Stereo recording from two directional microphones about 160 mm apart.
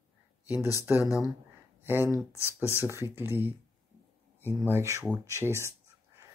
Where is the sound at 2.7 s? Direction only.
15° right (ahead or behind).